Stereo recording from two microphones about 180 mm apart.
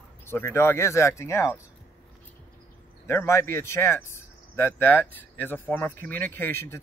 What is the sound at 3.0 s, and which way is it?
Speech, 15° left (ahead or behind).